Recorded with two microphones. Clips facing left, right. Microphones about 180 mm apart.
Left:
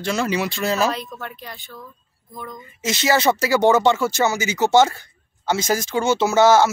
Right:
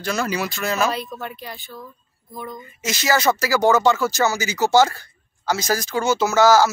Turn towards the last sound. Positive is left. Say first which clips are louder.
# left 1 dB
turn(degrees=25)  # may be behind; listen again after turning